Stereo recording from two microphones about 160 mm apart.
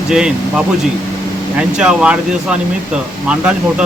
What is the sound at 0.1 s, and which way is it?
Speech, 5° right (ahead or behind).